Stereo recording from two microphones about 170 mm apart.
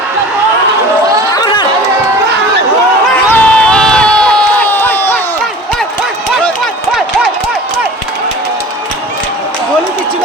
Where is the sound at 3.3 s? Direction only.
5° left (ahead or behind).